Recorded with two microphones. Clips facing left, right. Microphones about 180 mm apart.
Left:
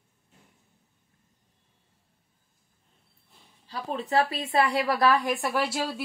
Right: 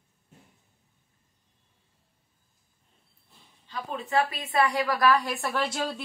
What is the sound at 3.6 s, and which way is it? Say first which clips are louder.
A woman's voice: left 2 dB; 35° left (ahead or behind).